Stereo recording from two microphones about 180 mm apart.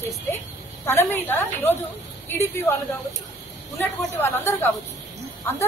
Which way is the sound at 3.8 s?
10° left (ahead or behind).